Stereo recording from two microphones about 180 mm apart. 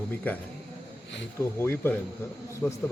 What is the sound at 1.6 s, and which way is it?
Speech, 15° left (ahead or behind).